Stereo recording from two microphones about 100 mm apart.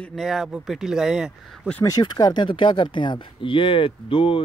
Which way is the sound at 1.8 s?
40° left (ahead or behind).